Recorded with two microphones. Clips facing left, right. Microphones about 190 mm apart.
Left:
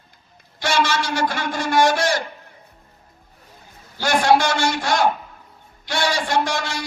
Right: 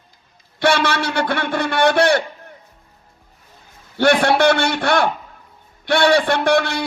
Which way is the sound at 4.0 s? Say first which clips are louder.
Right 3 dB; 60° right (ahead or behind).